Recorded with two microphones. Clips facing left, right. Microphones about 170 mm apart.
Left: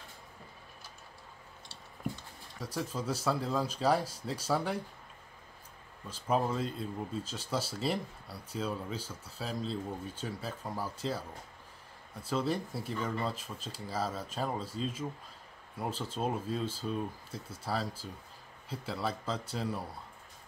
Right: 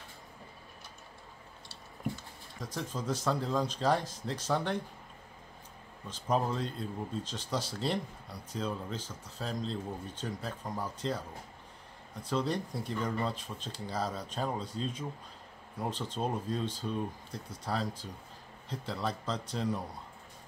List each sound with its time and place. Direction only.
2.6 s speech: 5° left (ahead or behind)
6.0 s speech: 5° left (ahead or behind)